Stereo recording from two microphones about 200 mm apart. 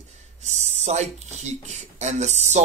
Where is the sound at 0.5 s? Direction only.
35° right (ahead or behind).